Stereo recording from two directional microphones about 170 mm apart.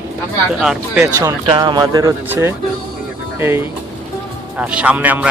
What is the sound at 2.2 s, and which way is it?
Speech, 10° right (ahead or behind).